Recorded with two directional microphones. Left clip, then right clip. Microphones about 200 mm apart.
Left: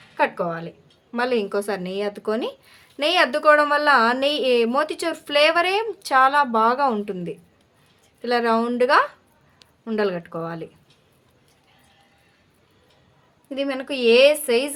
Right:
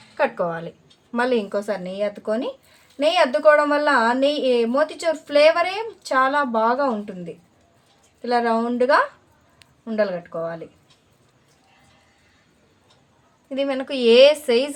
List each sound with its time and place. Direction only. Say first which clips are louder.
0.2 s a woman's voice: even; 5° left (ahead or behind); by 10.6 s 35° left (ahead or behind)
13.5 s a woman's voice: right 2 dB; 10° left (ahead or behind)